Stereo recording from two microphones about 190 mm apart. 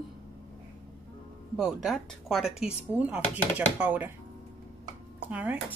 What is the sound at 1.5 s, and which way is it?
A woman's voice, centre (ahead or behind).